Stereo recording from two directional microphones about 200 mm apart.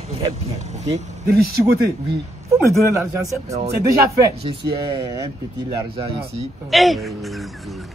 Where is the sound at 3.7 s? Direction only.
50° right (ahead or behind).